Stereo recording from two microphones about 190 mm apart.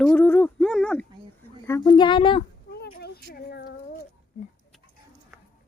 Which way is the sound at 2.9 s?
55° left (ahead or behind).